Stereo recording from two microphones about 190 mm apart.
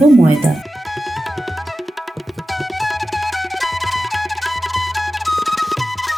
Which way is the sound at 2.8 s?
Centre (ahead or behind).